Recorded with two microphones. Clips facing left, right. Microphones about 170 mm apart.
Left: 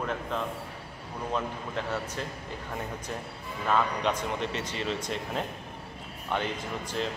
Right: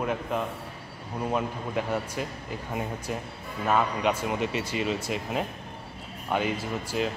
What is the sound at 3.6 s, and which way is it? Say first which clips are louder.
Speech: right 2 dB; 10° right (ahead or behind).